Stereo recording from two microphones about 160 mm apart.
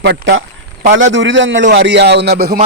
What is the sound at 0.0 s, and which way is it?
Speech, 90° right.